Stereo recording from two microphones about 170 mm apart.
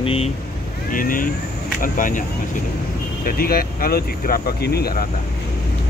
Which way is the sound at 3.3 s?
60° left (ahead or behind).